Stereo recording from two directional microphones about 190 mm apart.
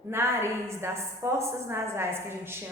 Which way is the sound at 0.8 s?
15° right (ahead or behind).